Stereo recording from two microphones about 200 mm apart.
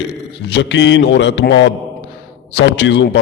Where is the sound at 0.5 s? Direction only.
65° left (ahead or behind).